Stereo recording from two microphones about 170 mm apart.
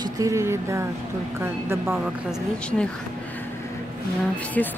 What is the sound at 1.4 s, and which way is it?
A woman's voice, 15° right (ahead or behind).